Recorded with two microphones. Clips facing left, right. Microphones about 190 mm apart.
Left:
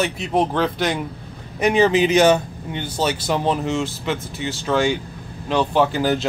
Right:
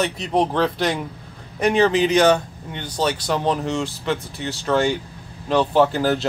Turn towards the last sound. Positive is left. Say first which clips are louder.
# right 1 dB
turn(degrees=0)  # may be behind; listen again after turning